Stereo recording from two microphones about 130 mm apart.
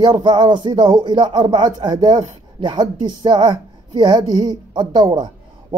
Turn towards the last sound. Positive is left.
turn(degrees=-35)  # may be behind; listen again after turning